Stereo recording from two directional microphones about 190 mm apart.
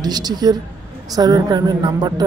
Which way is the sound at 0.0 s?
20° right (ahead or behind).